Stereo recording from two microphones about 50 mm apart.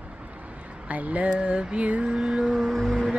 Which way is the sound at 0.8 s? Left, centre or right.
Right.